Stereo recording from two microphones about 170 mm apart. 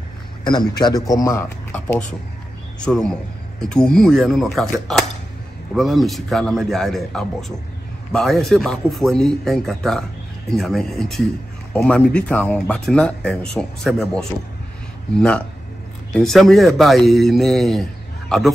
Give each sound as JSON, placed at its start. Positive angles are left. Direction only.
{"t": 0.4, "sound": "a man's voice", "side_deg": 25}
{"t": 1.7, "sound": "speech", "side_deg": 5}